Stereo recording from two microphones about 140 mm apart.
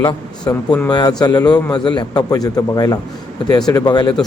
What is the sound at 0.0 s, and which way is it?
A man's voice, 30° left (ahead or behind).